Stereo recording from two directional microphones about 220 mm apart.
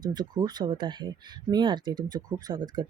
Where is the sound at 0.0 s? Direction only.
20° right (ahead or behind).